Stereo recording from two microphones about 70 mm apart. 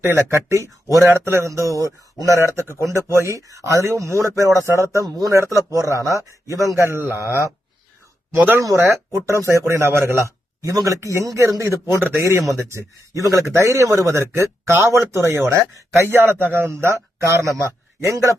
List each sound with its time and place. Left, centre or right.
0.0 s a man's voice: right
5.0 s speech: right
5.3 s a man's voice: right
8.3 s speech: right
8.5 s a man's voice: right
12.2 s a man's voice: right
16.7 s a man's voice: right